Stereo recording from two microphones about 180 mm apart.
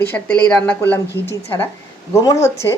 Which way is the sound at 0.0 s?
10° left (ahead or behind).